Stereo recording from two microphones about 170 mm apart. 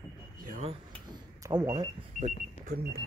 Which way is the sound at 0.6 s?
30° right (ahead or behind).